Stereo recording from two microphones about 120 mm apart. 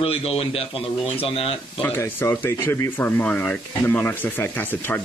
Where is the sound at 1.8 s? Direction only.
20° left (ahead or behind).